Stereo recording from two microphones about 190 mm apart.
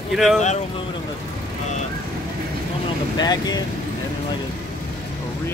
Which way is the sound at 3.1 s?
20° left (ahead or behind).